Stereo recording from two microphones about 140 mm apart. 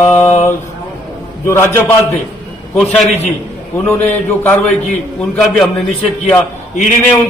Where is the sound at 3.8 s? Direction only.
15° left (ahead or behind).